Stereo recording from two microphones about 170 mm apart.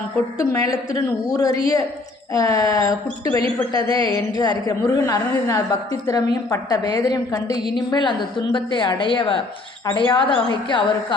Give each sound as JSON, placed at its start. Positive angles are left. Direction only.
{"t": 0.3, "sound": "a woman's voice", "side_deg": 20}